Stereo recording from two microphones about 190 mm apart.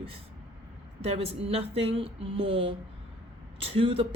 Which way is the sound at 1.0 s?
30° right (ahead or behind).